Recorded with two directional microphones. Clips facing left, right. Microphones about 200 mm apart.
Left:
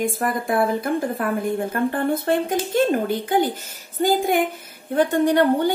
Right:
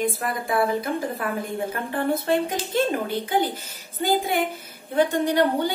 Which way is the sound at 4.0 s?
50° left (ahead or behind).